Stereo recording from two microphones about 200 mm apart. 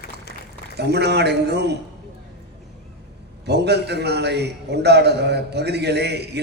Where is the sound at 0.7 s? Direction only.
55° right (ahead or behind).